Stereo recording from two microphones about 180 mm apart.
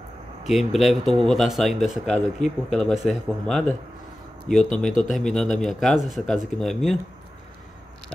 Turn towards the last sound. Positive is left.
turn(degrees=0)  # may be behind; listen again after turning